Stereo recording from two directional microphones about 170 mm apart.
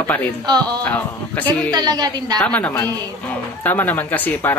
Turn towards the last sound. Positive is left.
turn(degrees=10)  # may be behind; listen again after turning